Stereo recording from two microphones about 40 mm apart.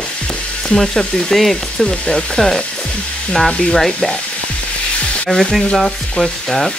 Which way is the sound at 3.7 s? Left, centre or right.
Centre.